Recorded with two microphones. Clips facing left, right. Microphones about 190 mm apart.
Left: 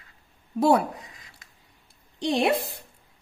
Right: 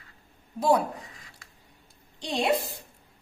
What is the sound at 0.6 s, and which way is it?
Speech, 60° left (ahead or behind).